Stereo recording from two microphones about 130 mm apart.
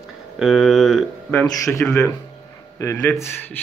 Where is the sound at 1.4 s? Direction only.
25° left (ahead or behind).